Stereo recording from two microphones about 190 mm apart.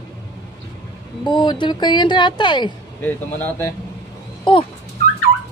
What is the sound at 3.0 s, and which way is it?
Speech, 15° left (ahead or behind).